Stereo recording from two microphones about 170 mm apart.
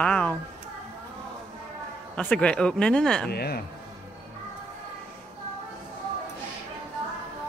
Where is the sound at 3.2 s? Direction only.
65° left (ahead or behind).